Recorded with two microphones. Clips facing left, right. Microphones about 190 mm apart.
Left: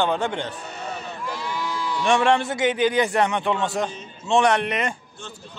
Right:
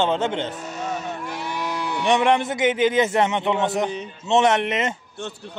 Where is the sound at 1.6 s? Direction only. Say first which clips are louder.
Right 2 dB; 65° right (ahead or behind).